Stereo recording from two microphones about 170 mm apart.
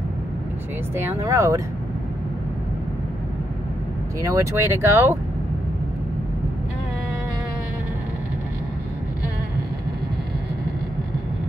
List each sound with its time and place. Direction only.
0.9 s speech: 15° right (ahead or behind)
4.2 s speech: 20° right (ahead or behind)